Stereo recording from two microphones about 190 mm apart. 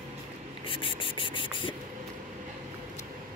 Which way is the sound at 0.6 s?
25° left (ahead or behind).